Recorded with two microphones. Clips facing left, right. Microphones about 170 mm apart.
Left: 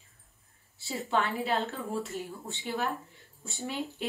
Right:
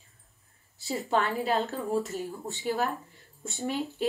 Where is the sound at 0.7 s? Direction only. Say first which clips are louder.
Right 2 dB; 40° right (ahead or behind).